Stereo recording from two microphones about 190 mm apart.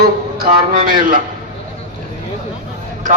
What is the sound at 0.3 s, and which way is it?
Speech, 50° right (ahead or behind).